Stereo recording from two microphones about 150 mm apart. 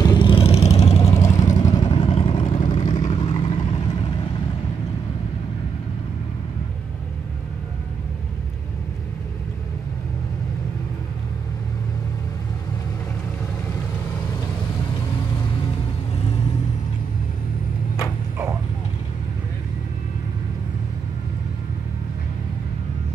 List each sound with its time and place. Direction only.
0.0 s vehicle: 30° left (ahead or behind)
1.1 s vehicle: 20° left (ahead or behind)
1.9 s vehicle: 40° left (ahead or behind)
2.6 s vehicle: 30° left (ahead or behind)
2.9 s vehicle: 50° left (ahead or behind)
3.2 s vehicle: 35° left (ahead or behind)